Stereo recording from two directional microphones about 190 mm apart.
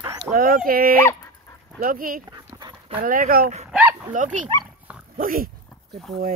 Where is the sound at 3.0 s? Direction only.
50° right (ahead or behind).